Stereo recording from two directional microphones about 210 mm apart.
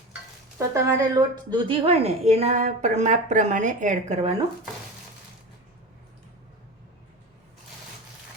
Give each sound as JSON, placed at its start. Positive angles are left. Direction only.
{"t": 0.7, "sound": "a woman's voice", "side_deg": -15}